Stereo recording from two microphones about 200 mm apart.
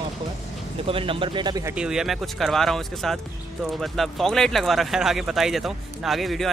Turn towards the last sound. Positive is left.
turn(degrees=0)  # may be behind; listen again after turning